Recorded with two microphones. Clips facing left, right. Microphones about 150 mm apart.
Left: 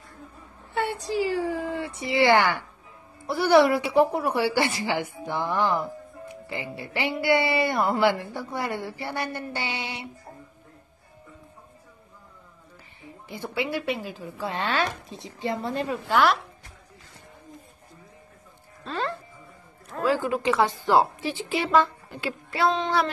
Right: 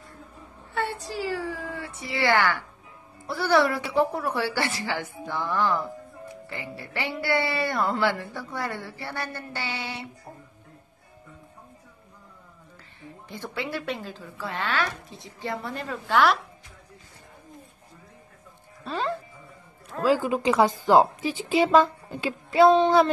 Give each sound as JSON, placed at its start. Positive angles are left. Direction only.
{"t": 0.7, "sound": "a sound", "side_deg": 15}
{"t": 3.3, "sound": "a woman's voice", "side_deg": 15}
{"t": 13.0, "sound": "a woman's voice", "side_deg": 15}
{"t": 16.1, "sound": "a woman's voice", "side_deg": 0}
{"t": 18.9, "sound": "a woman's voice", "side_deg": -15}
{"t": 20.2, "sound": "a woman's voice", "side_deg": -20}